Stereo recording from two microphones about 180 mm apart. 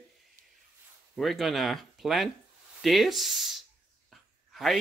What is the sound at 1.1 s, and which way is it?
Speech, centre (ahead or behind).